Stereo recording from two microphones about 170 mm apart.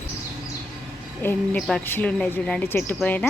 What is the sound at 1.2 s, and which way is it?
A woman's voice, 10° left (ahead or behind).